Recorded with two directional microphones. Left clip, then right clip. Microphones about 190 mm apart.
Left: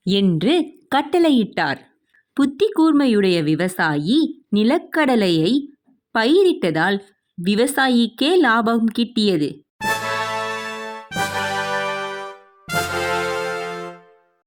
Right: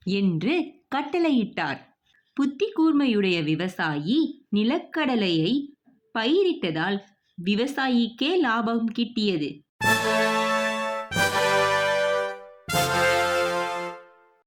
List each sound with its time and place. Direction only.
0.0 s a woman's voice: 40° left (ahead or behind)
9.7 s music: centre (ahead or behind)